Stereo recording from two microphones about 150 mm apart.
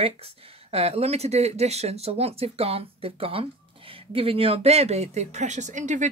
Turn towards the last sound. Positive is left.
turn(degrees=-55)  # may be behind; listen again after turning